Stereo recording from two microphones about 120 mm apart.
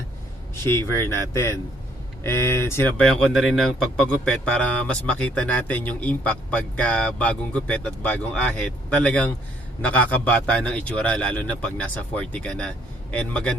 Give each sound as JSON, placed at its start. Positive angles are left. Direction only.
{"t": 0.6, "sound": "speech", "side_deg": 25}
{"t": 3.0, "sound": "a man's voice", "side_deg": 5}